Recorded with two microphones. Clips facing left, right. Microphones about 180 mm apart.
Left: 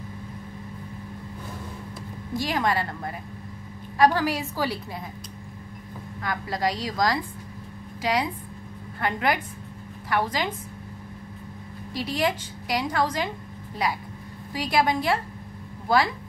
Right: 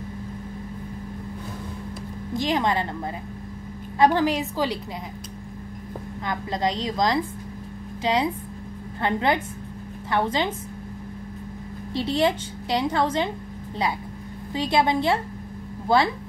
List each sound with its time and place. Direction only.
2.3 s a woman's voice: 20° right (ahead or behind)
4.0 s a woman's voice: 20° right (ahead or behind)
6.2 s a woman's voice: 20° right (ahead or behind)
11.9 s a woman's voice: 25° right (ahead or behind)
14.5 s a woman's voice: 25° right (ahead or behind)